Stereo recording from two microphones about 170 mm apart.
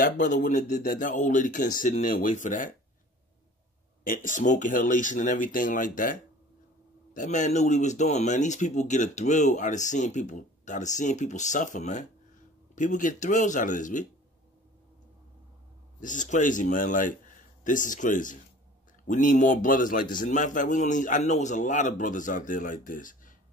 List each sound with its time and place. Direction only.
0.0 s speech: 50° left (ahead or behind)
4.0 s speech: 55° left (ahead or behind)
7.2 s speech: 45° left (ahead or behind)
16.0 s speech: 50° left (ahead or behind)